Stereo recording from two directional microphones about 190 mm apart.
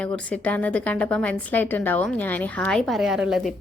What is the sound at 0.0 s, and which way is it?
A woman's voice, 5° left (ahead or behind).